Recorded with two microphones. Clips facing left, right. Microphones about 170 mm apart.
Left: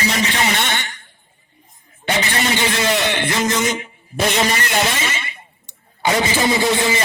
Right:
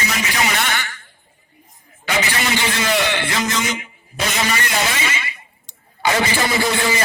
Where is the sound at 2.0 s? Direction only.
30° left (ahead or behind).